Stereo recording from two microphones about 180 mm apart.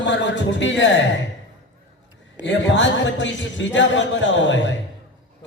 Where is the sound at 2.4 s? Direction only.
90° left.